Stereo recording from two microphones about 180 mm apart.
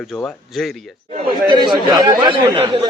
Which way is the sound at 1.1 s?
30° right (ahead or behind).